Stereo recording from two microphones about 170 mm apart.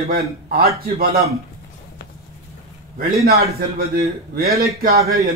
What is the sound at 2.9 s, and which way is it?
A man's voice, 65° right (ahead or behind).